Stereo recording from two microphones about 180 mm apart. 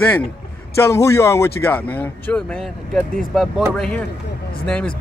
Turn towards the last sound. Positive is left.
turn(degrees=5)  # may be behind; listen again after turning